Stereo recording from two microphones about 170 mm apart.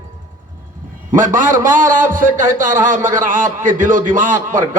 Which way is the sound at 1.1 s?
50° right (ahead or behind).